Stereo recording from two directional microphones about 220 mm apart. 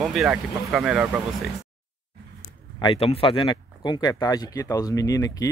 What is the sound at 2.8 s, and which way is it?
Speech, 25° left (ahead or behind).